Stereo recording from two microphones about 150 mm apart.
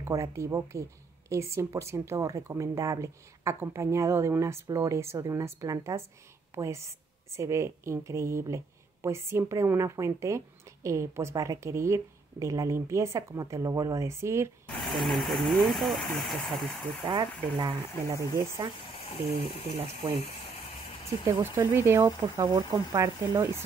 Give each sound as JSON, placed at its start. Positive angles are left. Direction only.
{"t": 0.0, "sound": "a woman's voice", "side_deg": -20}
{"t": 15.0, "sound": "speech", "side_deg": 0}
{"t": 17.0, "sound": "speech", "side_deg": -35}
{"t": 21.4, "sound": "speech", "side_deg": -15}